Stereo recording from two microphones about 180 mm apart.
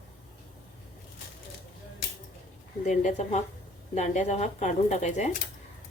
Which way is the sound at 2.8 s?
40° left (ahead or behind).